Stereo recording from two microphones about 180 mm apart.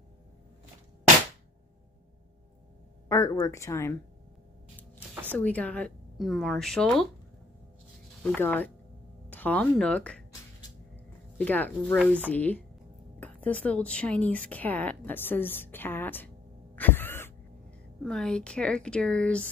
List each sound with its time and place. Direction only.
3.1 s speech: 20° left (ahead or behind)
5.3 s speech: 10° left (ahead or behind)
8.2 s speech: 10° left (ahead or behind)
11.3 s speech: 10° left (ahead or behind)
16.7 s a sound: 10° left (ahead or behind)
18.0 s speech: 5° left (ahead or behind)